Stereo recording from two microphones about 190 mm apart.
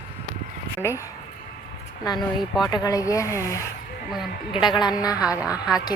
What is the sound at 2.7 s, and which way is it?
Speech, 20° left (ahead or behind).